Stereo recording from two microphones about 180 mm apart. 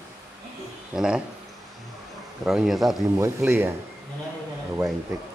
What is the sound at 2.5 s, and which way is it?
Speech, centre (ahead or behind).